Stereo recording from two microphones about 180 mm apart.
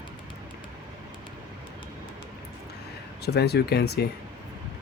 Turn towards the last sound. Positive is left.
turn(degrees=65)  # may be behind; listen again after turning